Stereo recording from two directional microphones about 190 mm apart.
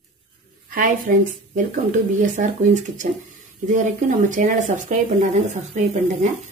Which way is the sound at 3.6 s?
40° right (ahead or behind).